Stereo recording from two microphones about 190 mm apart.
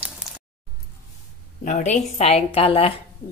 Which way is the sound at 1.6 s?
40° left (ahead or behind).